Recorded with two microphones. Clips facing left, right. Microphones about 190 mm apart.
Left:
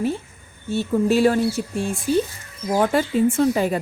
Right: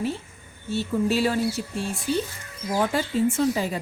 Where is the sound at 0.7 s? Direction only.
50° left (ahead or behind).